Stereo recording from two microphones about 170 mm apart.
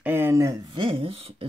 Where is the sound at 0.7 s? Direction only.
30° right (ahead or behind).